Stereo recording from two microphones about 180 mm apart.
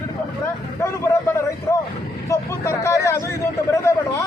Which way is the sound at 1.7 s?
20° left (ahead or behind).